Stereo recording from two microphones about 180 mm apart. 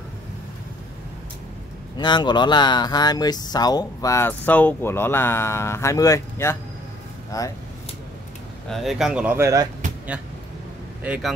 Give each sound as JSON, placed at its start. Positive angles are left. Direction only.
{"t": 2.0, "sound": "speech", "side_deg": 25}
{"t": 8.6, "sound": "speech", "side_deg": 0}